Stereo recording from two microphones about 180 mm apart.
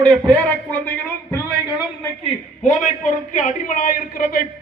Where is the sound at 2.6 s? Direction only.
40° left (ahead or behind).